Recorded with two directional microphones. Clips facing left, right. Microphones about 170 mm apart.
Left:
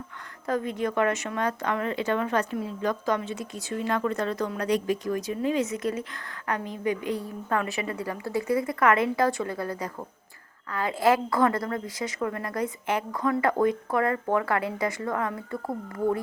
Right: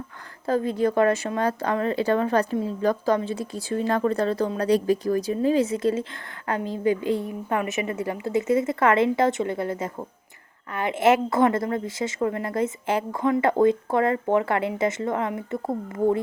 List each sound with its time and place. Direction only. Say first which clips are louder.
0.4 s a woman's voice: right 5 dB; 30° right (ahead or behind)